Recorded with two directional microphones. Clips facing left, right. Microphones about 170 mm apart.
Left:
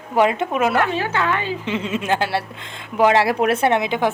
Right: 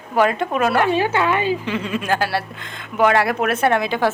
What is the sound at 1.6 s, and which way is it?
Speech, 25° left (ahead or behind).